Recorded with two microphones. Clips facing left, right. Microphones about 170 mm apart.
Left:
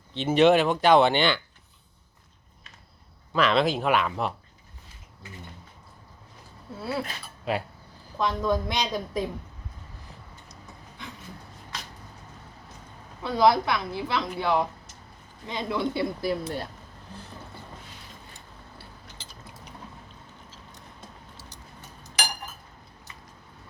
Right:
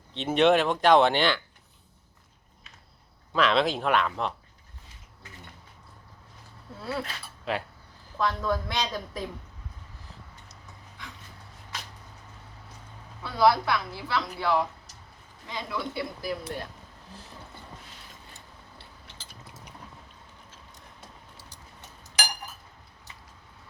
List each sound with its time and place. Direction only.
0.1 s speech: centre (ahead or behind)
3.3 s speech: centre (ahead or behind)
6.7 s a woman's voice: 10° left (ahead or behind)
13.2 s a woman's voice: 20° left (ahead or behind)
17.1 s speech: centre (ahead or behind)